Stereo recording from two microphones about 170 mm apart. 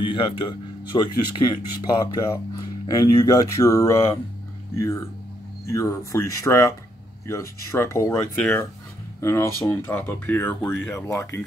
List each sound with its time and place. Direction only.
0.0 s speech: 30° left (ahead or behind)
5.7 s speech: 15° left (ahead or behind)